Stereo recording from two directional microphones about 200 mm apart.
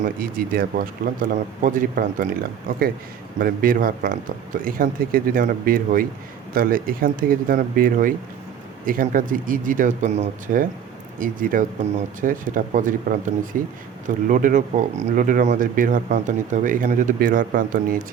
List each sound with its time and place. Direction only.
0.0 s speech: 45° right (ahead or behind)